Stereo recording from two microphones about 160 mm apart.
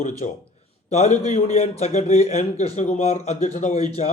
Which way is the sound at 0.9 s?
45° left (ahead or behind).